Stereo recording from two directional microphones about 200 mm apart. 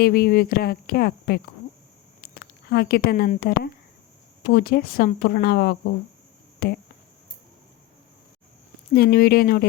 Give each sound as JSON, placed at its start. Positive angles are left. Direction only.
{"t": 0.0, "sound": "speech", "side_deg": 50}
{"t": 8.9, "sound": "speech", "side_deg": 50}